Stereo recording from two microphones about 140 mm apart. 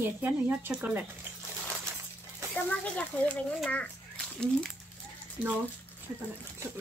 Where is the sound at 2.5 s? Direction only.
10° left (ahead or behind).